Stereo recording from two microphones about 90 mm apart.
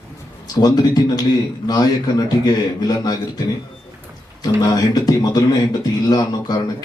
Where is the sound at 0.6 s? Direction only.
45° left (ahead or behind).